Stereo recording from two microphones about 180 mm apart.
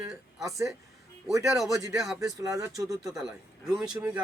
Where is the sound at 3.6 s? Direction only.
5° right (ahead or behind).